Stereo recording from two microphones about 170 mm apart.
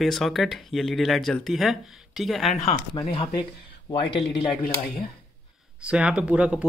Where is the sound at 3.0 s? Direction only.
30° left (ahead or behind).